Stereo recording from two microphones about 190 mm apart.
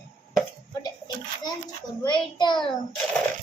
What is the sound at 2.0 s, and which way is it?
Speech, 25° left (ahead or behind).